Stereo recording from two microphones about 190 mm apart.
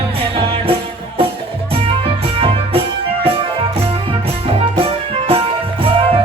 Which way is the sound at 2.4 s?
30° right (ahead or behind).